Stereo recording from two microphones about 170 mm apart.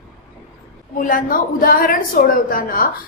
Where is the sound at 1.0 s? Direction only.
55° left (ahead or behind).